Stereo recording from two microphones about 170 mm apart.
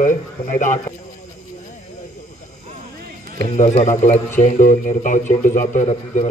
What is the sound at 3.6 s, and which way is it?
Speech, 45° left (ahead or behind).